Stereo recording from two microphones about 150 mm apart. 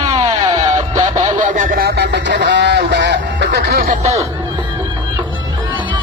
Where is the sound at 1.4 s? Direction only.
60° right (ahead or behind); by 2.0 s 80° right.